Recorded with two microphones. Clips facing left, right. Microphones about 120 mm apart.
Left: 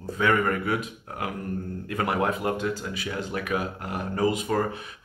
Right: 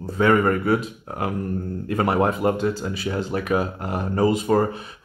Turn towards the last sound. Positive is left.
turn(degrees=-35)  # may be behind; listen again after turning